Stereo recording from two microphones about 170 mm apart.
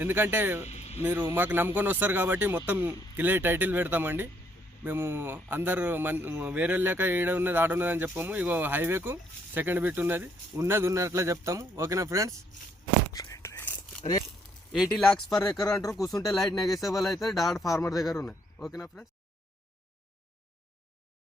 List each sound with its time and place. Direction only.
0.0 s a man's voice: 10° right (ahead or behind)
0.6 s a sound: 40° left (ahead or behind)
1.2 s a man's voice: 15° right (ahead or behind)
13.1 s whispering: 20° left (ahead or behind)
14.7 s speech: centre (ahead or behind)
15.7 s speech: 20° left (ahead or behind)
16.3 s speech: centre (ahead or behind)
17.7 s speech: 20° left (ahead or behind)